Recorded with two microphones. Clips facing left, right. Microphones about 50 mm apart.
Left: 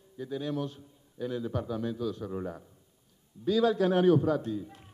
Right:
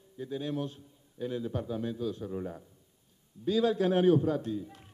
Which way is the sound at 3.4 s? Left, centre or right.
Right.